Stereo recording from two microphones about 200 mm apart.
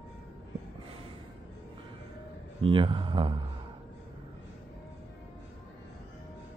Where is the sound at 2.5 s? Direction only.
25° right (ahead or behind).